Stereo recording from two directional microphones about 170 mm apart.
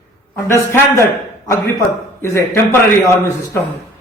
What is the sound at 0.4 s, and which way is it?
A man's voice, 15° left (ahead or behind).